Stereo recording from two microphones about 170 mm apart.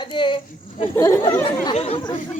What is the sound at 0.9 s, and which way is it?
Speech, 15° left (ahead or behind).